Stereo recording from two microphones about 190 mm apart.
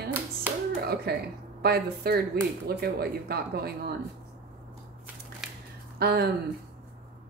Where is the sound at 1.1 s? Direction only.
60° right (ahead or behind).